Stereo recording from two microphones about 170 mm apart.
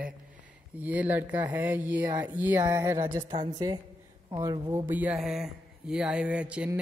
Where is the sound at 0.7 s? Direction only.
10° right (ahead or behind).